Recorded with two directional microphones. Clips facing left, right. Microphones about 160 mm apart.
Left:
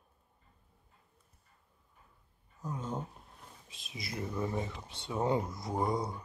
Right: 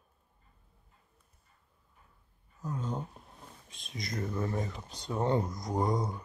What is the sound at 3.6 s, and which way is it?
Speech, 5° left (ahead or behind).